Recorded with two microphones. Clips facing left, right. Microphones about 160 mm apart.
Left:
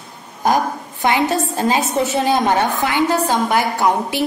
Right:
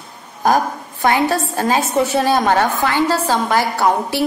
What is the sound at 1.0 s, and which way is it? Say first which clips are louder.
A woman's voice: right 1 dB; 20° left (ahead or behind).